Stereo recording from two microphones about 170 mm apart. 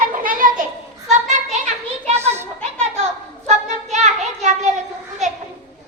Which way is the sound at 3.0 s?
40° right (ahead or behind).